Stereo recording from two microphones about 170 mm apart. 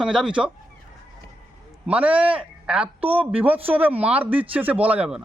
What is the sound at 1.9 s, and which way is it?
A man's voice, 10° right (ahead or behind).